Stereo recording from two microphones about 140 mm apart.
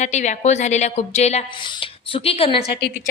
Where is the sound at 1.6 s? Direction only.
35° left (ahead or behind).